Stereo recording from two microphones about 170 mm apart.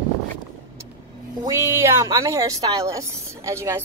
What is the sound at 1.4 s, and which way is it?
A woman's voice, 15° right (ahead or behind).